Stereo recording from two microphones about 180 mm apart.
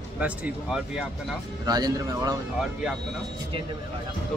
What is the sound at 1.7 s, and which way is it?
Speech, 20° right (ahead or behind).